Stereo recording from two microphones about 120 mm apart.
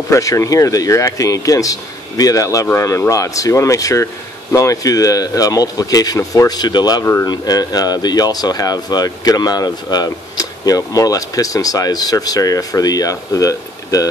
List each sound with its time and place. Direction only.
0.1 s speech: 25° left (ahead or behind)